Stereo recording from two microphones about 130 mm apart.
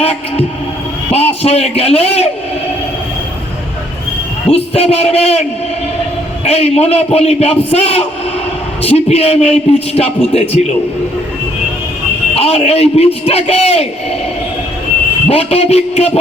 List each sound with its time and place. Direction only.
0.0 s a man's voice: 50° left (ahead or behind)
4.5 s a man's voice: 50° left (ahead or behind)
6.4 s a man's voice: 50° left (ahead or behind)
12.3 s a man's voice: 50° left (ahead or behind)
15.3 s a man's voice: 50° left (ahead or behind)